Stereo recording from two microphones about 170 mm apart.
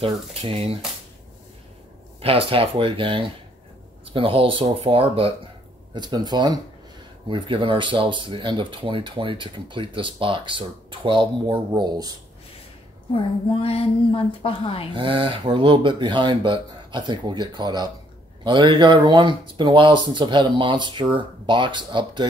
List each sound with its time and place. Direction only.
0.0 s speech: 35° right (ahead or behind)
2.2 s speech: 35° right (ahead or behind)
13.1 s a woman's voice: 35° left (ahead or behind)
15.0 s speech: 30° right (ahead or behind)